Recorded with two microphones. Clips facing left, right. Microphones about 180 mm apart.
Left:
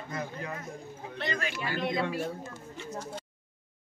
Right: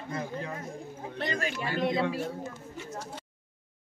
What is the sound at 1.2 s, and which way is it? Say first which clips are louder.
Speech: right 2 dB; 45° right (ahead or behind).